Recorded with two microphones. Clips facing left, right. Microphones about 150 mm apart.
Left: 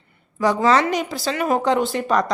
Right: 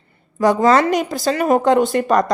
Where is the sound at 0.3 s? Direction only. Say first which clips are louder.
Right 4 dB; 50° right (ahead or behind).